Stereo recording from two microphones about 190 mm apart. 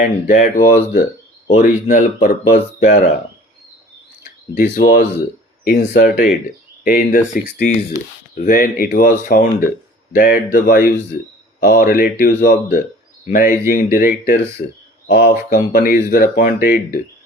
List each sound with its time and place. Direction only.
0.0 s speech: 50° left (ahead or behind)
4.5 s speech: 50° left (ahead or behind)